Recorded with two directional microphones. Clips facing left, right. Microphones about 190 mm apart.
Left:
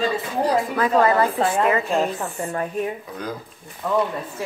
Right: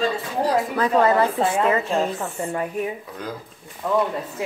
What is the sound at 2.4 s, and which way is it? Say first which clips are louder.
Speech: even; 15° right (ahead or behind).